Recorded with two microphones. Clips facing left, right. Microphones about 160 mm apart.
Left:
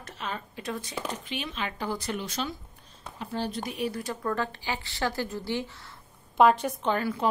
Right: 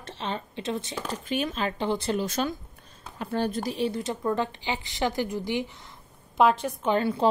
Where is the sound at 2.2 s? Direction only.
50° right (ahead or behind).